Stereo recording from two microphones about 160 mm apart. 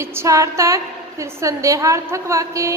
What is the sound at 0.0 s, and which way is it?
A woman's voice, 15° right (ahead or behind).